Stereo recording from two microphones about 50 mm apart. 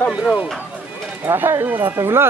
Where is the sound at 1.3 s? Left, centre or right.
Right.